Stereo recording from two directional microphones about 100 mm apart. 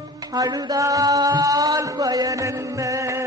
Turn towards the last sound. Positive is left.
turn(degrees=-30)  # may be behind; listen again after turning